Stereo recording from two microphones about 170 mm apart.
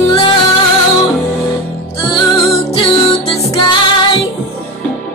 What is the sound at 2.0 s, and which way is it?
Music, 30° left (ahead or behind).